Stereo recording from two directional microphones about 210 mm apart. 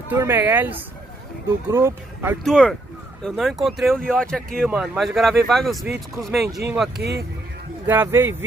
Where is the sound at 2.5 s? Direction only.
5° left (ahead or behind).